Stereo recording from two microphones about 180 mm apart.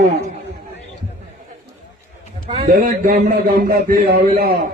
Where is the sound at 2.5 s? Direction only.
30° right (ahead or behind).